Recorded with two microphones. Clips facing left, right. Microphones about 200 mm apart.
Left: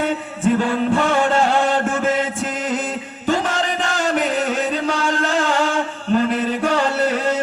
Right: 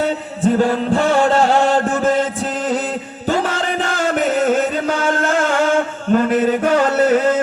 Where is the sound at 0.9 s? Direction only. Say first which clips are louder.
Right 3 dB; 35° right (ahead or behind).